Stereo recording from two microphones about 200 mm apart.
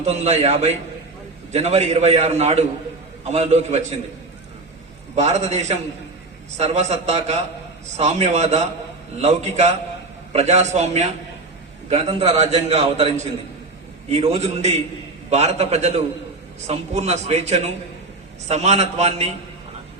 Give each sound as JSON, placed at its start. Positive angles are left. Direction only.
{"t": 0.0, "sound": "a man's voice", "side_deg": -35}
{"t": 5.1, "sound": "a man's voice", "side_deg": -35}